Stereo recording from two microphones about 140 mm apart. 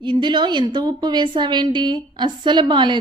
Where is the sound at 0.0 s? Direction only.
35° right (ahead or behind).